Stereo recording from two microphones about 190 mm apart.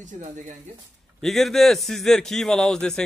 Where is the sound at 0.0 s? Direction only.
40° right (ahead or behind).